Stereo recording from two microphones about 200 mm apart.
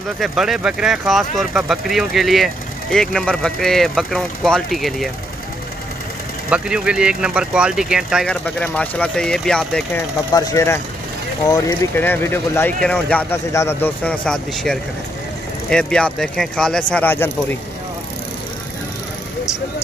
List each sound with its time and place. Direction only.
0.2 s speech: centre (ahead or behind)
6.5 s speech: 5° right (ahead or behind)
10.3 s speech: 20° left (ahead or behind)